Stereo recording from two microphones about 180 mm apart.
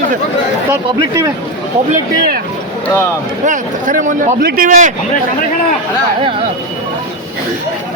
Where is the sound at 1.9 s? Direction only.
55° right (ahead or behind).